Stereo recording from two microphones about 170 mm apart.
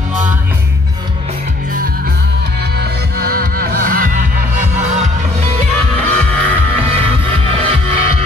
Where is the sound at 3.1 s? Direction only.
60° right (ahead or behind).